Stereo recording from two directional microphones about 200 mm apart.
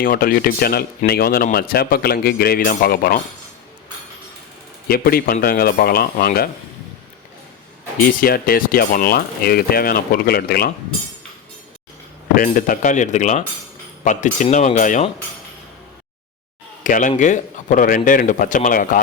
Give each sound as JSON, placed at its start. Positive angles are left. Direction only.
{"t": 0.0, "sound": "speech", "side_deg": 45}
{"t": 4.9, "sound": "speech", "side_deg": 50}
{"t": 8.0, "sound": "speech", "side_deg": 50}
{"t": 12.3, "sound": "speech", "side_deg": 45}
{"t": 16.8, "sound": "speech", "side_deg": 40}